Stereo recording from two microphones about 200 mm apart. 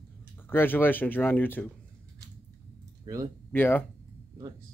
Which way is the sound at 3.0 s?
15° right (ahead or behind).